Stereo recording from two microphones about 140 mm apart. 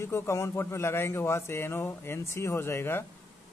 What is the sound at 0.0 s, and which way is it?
Speech, 20° left (ahead or behind).